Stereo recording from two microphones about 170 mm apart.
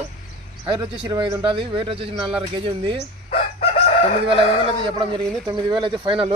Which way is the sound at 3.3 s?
35° left (ahead or behind).